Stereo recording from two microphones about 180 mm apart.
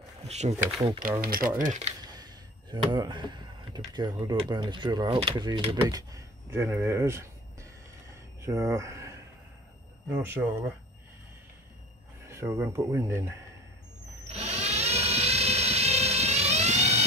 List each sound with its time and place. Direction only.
0.2 s speech: 35° right (ahead or behind)
1.2 s speech: 50° right (ahead or behind)
1.6 s speech: 40° right (ahead or behind)
2.0 s speech: 20° right (ahead or behind)
8.4 s speech: 15° right (ahead or behind)
10.1 s speech: 10° right (ahead or behind)
12.3 s speech: 15° right (ahead or behind)
14.2 s a sound: 35° right (ahead or behind)